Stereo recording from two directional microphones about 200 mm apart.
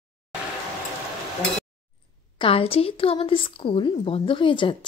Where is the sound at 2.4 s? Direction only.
30° left (ahead or behind).